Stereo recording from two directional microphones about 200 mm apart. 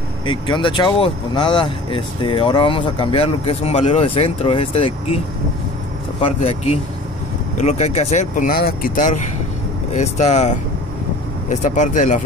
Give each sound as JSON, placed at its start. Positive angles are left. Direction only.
{"t": 0.2, "sound": "speech", "side_deg": 25}
{"t": 6.4, "sound": "speech", "side_deg": 35}